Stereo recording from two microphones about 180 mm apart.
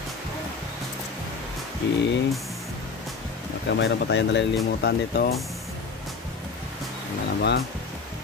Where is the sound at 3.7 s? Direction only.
75° left (ahead or behind).